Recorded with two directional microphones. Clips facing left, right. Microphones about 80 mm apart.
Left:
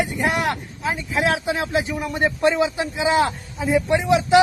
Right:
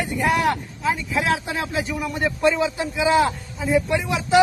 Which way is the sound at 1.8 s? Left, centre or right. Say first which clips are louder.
Left 2 dB; left.